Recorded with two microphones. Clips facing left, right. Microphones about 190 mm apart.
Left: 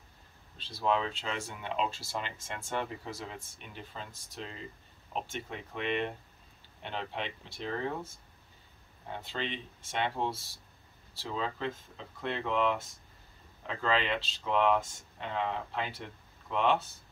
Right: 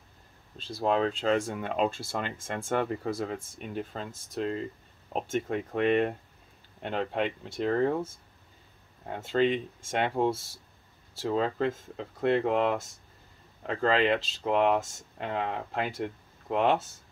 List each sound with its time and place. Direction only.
0.6 s speech: 45° right (ahead or behind)